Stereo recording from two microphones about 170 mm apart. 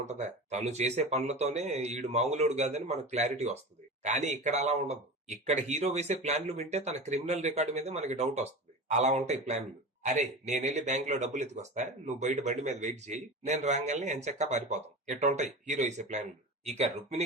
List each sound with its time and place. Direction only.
0.0 s a man's voice: 40° right (ahead or behind)